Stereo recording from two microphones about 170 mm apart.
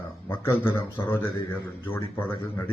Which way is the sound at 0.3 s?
10° left (ahead or behind).